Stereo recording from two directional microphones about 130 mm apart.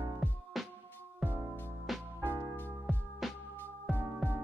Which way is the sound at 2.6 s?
15° left (ahead or behind).